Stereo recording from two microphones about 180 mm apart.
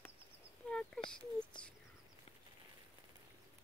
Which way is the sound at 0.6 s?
5° left (ahead or behind).